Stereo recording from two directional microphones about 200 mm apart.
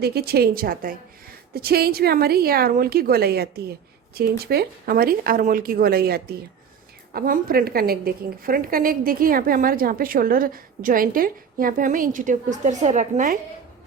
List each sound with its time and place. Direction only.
0.0 s a woman's voice: 50° right (ahead or behind)